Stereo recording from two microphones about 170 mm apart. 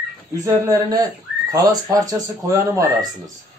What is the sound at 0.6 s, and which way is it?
Speech, 20° right (ahead or behind).